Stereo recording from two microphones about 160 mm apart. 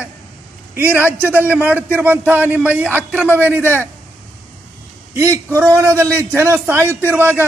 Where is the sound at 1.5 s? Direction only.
10° right (ahead or behind).